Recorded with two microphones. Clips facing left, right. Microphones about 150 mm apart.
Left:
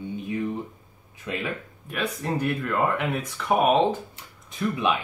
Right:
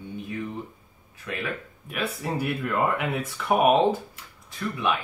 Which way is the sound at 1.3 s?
20° left (ahead or behind).